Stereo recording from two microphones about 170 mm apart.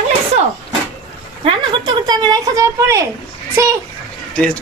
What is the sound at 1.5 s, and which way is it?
A woman's voice, 25° right (ahead or behind).